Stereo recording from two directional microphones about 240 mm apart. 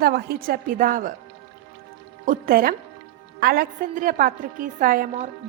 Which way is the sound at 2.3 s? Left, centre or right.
Right.